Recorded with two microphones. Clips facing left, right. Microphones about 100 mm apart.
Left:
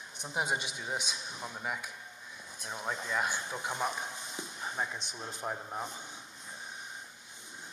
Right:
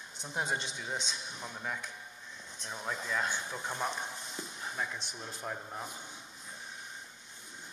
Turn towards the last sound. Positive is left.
turn(degrees=20)  # may be behind; listen again after turning